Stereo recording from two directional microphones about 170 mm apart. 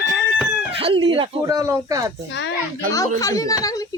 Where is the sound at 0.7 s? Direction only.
30° right (ahead or behind).